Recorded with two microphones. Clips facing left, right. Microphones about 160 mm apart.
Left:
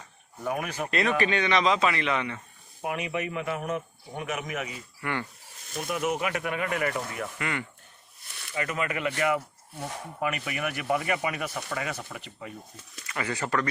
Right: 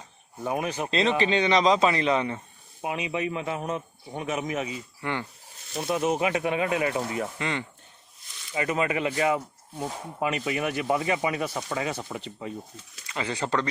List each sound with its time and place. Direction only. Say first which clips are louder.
0.4 s speech: right 2 dB; 25° right (ahead or behind)
8.3 s a sound: left 3 dB; 60° left (ahead or behind)
8.5 s speech: right 4 dB; 25° right (ahead or behind)